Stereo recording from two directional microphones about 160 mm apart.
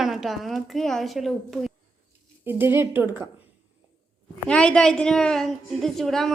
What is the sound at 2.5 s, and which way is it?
Speech, 15° right (ahead or behind).